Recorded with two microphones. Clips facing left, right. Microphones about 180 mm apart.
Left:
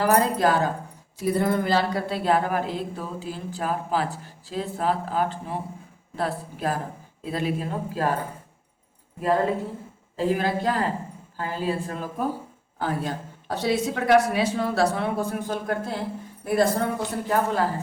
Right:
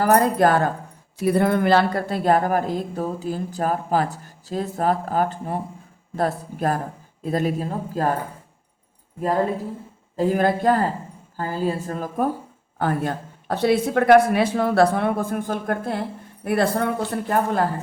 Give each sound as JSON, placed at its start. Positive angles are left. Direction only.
{"t": 0.0, "sound": "speech", "side_deg": -50}
{"t": 10.2, "sound": "a woman's voice", "side_deg": -50}